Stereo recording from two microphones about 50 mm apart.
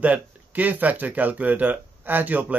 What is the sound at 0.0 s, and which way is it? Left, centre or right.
Speech, right.